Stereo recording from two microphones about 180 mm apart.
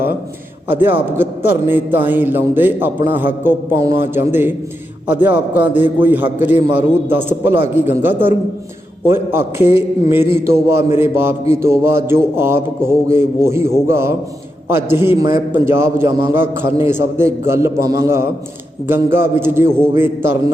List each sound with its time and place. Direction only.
0.7 s a man's voice: 10° right (ahead or behind)